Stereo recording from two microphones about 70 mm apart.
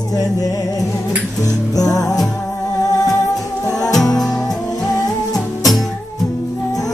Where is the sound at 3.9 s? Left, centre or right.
Centre.